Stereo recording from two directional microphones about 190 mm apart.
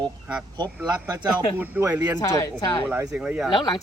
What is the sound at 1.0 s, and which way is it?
Speech, 15° right (ahead or behind).